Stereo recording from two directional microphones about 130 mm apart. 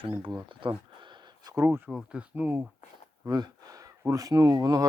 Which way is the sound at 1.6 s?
15° right (ahead or behind).